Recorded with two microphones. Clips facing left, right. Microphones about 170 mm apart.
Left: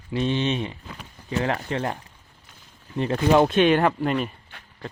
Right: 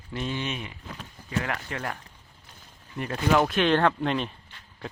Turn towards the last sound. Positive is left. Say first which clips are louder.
# left 2 dB
turn(degrees=5)  # may be behind; listen again after turning